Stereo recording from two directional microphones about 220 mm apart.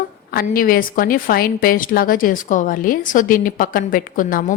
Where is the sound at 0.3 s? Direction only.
40° left (ahead or behind).